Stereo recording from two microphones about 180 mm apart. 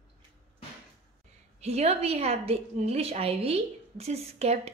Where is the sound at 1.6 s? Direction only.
35° right (ahead or behind).